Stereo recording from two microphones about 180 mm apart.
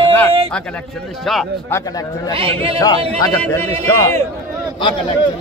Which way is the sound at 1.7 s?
20° left (ahead or behind).